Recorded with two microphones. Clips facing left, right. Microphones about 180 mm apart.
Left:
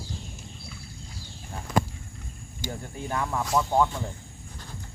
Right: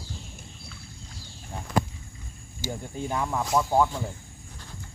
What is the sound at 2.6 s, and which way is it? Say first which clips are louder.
Speech: right 2 dB; 10° right (ahead or behind).